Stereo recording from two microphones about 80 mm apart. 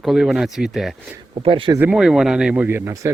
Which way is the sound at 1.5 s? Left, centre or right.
Right.